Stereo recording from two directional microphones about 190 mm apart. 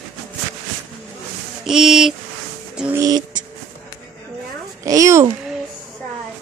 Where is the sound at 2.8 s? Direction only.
15° right (ahead or behind).